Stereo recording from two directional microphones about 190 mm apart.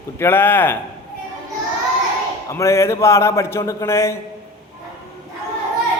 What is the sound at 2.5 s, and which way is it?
A man's voice, 15° left (ahead or behind).